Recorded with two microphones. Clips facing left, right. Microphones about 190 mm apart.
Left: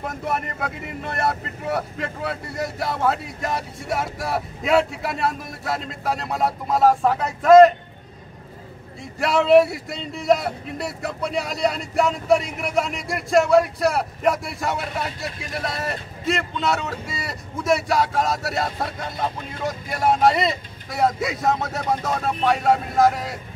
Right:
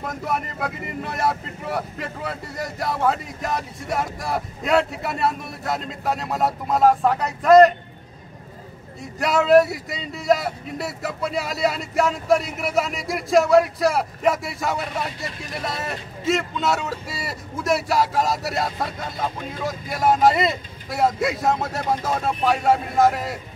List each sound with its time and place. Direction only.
0.0 s a man's voice: centre (ahead or behind)
9.2 s a man's voice: centre (ahead or behind)